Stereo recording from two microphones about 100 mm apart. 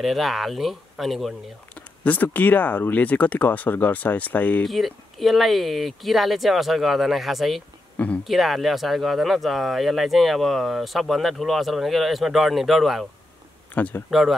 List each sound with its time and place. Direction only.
0.0 s speech: centre (ahead or behind)
2.0 s speech: 15° left (ahead or behind)
4.6 s speech: centre (ahead or behind)
13.7 s speech: 15° left (ahead or behind)